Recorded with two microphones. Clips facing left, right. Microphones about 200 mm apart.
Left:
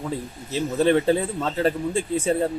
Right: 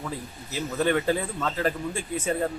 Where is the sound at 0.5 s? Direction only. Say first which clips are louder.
Left 5 dB; 25° left (ahead or behind).